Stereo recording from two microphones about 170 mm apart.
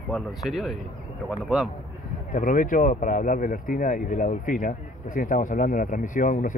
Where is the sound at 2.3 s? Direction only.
50° left (ahead or behind).